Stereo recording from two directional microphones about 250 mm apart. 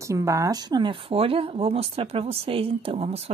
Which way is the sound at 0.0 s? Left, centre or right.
Centre.